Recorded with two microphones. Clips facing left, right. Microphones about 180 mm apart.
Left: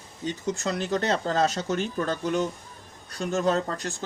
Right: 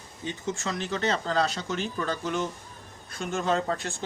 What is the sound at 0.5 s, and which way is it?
Speech, 40° left (ahead or behind).